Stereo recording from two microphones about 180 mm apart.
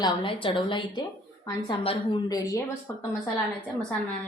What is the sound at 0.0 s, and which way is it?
A woman's voice, 30° left (ahead or behind).